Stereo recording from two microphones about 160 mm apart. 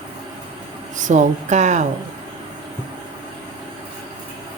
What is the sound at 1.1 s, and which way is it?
Speech, 50° right (ahead or behind).